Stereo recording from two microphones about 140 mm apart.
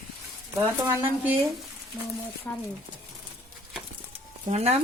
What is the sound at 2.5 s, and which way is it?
Speech, 15° left (ahead or behind).